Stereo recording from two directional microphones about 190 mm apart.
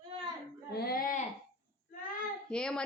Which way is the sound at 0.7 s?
55° left (ahead or behind).